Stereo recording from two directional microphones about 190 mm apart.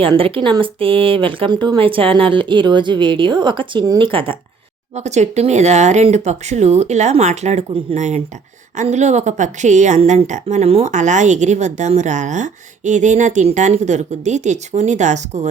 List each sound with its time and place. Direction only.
0.0 s a woman's voice: 30° right (ahead or behind)